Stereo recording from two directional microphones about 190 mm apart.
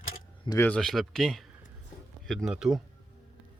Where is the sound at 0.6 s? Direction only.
5° left (ahead or behind).